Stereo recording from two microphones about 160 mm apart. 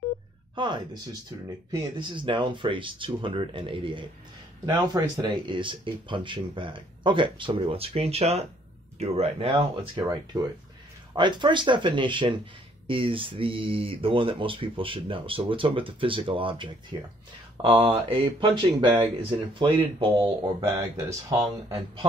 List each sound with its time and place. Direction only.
0.6 s speech: 30° right (ahead or behind)
10.0 s speech: 20° right (ahead or behind)
20.6 s speech: 20° right (ahead or behind)